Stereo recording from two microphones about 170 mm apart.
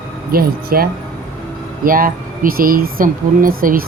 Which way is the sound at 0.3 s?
60° right (ahead or behind).